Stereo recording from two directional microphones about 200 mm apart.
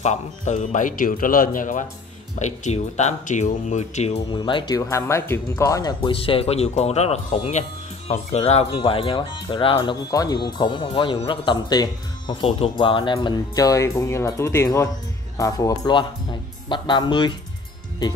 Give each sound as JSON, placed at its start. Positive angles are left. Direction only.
{"t": 0.0, "sound": "speech", "side_deg": 35}
{"t": 4.4, "sound": "speech", "side_deg": 25}